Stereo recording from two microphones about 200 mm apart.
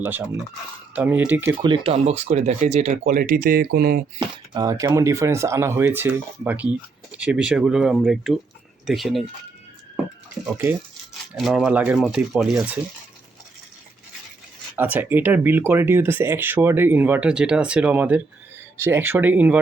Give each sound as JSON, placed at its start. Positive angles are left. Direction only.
{"t": 0.0, "sound": "speech", "side_deg": -10}
{"t": 1.6, "sound": "speech", "side_deg": -25}
{"t": 4.5, "sound": "speech", "side_deg": -15}
{"t": 11.3, "sound": "speech", "side_deg": 0}
{"t": 14.8, "sound": "speech", "side_deg": -10}